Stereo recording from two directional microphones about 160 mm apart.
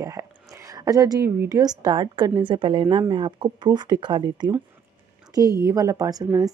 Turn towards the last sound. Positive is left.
turn(degrees=-20)  # may be behind; listen again after turning